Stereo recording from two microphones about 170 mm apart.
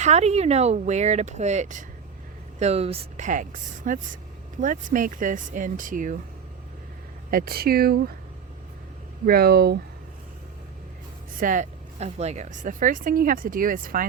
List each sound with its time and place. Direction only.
0.0 s a woman's voice: 40° right (ahead or behind)
7.3 s speech: 60° right (ahead or behind)
9.2 s speech: 65° right (ahead or behind)
11.3 s a woman's voice: 50° right (ahead or behind)